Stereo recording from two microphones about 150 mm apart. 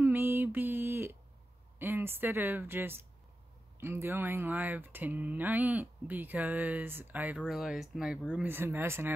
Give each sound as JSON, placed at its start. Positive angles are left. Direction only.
{"t": 0.0, "sound": "a sound", "side_deg": -15}
{"t": 1.8, "sound": "speech", "side_deg": -15}
{"t": 8.5, "sound": "speech", "side_deg": -15}